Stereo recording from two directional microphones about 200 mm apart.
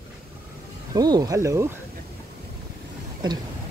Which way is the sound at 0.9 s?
20° right (ahead or behind).